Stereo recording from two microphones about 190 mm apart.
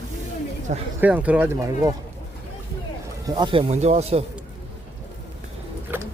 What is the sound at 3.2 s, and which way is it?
Speech, 25° right (ahead or behind).